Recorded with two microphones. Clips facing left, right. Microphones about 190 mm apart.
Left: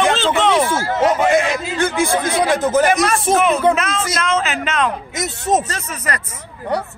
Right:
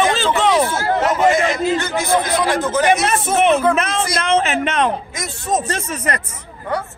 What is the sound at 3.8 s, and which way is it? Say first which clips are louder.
Speech: right 1 dB; 30° right (ahead or behind).